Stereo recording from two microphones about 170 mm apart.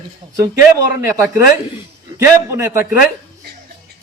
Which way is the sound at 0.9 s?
15° right (ahead or behind).